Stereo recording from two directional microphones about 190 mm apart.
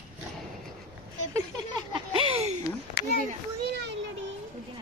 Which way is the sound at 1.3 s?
25° right (ahead or behind).